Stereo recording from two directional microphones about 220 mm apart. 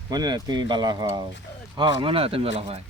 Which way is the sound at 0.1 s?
20° right (ahead or behind).